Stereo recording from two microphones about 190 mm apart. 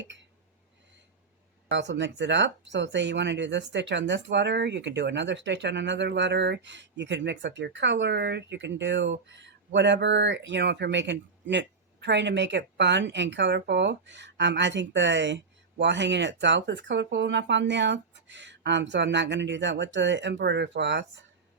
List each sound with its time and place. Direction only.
1.7 s speech: 65° right (ahead or behind)